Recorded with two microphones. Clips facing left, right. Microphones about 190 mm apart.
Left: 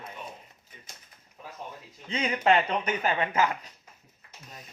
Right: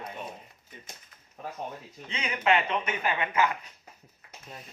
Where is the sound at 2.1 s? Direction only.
35° left (ahead or behind).